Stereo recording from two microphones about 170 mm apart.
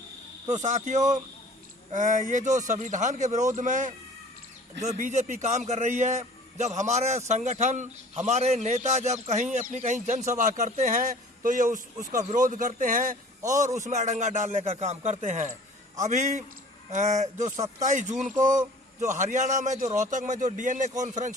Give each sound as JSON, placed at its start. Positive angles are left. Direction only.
{"t": 0.4, "sound": "speech", "side_deg": -45}